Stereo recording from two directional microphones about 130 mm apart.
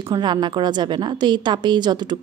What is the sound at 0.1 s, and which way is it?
Speech, 35° right (ahead or behind).